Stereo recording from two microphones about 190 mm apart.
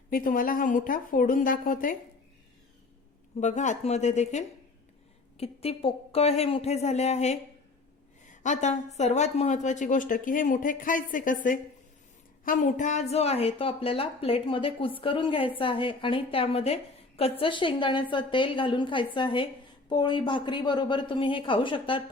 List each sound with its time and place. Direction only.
0.1 s a woman's voice: 45° left (ahead or behind)
3.4 s a woman's voice: 40° left (ahead or behind)
12.5 s a woman's voice: 40° left (ahead or behind)